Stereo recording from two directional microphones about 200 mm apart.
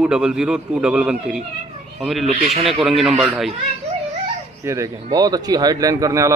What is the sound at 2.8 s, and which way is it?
Speech, centre (ahead or behind).